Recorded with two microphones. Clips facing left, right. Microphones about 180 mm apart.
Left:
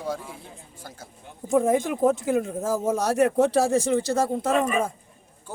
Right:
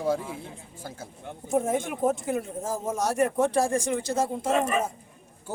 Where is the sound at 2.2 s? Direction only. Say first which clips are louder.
Left 5 dB; 90° left.